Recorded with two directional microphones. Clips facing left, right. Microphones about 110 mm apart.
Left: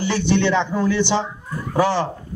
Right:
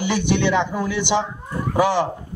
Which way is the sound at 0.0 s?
15° right (ahead or behind).